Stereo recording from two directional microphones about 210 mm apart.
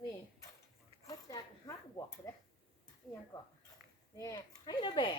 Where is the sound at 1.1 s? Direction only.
15° left (ahead or behind).